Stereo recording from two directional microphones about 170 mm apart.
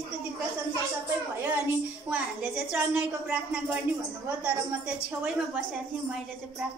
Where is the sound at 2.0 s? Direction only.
5° right (ahead or behind).